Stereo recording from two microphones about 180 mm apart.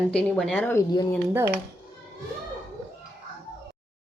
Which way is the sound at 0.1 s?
5° left (ahead or behind).